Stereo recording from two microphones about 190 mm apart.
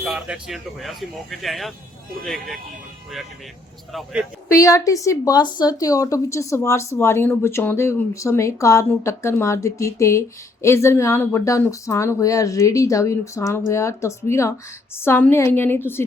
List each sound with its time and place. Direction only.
0.0 s speech: 5° right (ahead or behind)
4.6 s a woman's voice: 15° left (ahead or behind)